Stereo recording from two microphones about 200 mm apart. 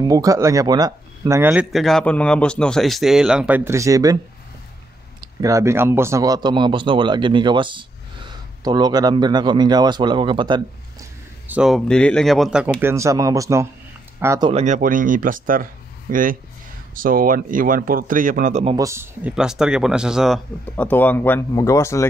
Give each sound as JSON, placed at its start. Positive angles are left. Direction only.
{"t": 0.1, "sound": "speech", "side_deg": -15}
{"t": 5.4, "sound": "speech", "side_deg": -15}
{"t": 11.4, "sound": "speech", "side_deg": -5}
{"t": 14.5, "sound": "speech", "side_deg": -35}
{"t": 18.8, "sound": "speech", "side_deg": -15}
{"t": 20.7, "sound": "speech", "side_deg": 10}